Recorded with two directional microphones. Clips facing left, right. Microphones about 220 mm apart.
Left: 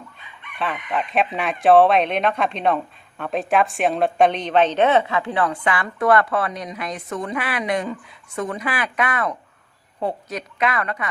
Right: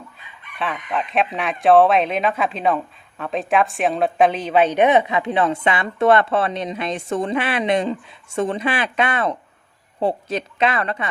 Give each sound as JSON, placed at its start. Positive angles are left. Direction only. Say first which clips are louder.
{"t": 0.6, "sound": "a woman's voice", "louder": "even", "side_deg": 0}